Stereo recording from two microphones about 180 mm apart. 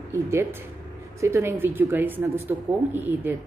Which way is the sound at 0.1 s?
15° right (ahead or behind).